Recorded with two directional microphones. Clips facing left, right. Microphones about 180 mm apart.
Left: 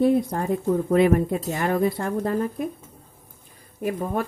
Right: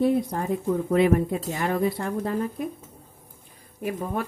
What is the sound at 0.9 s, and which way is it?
Speech, 45° left (ahead or behind).